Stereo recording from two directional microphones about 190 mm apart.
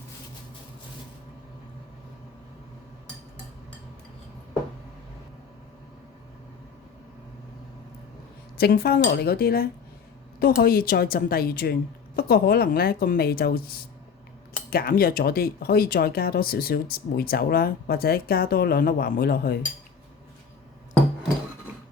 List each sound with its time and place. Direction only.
8.5 s speech: 55° left (ahead or behind)